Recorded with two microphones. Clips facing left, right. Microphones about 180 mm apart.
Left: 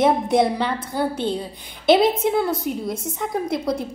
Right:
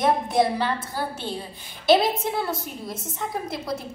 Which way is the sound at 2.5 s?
Centre (ahead or behind).